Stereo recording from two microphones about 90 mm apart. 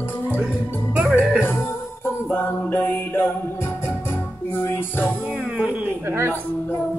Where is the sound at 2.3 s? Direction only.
20° left (ahead or behind).